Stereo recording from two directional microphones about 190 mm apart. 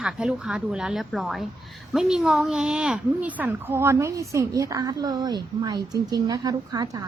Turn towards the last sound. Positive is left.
turn(degrees=-20)  # may be behind; listen again after turning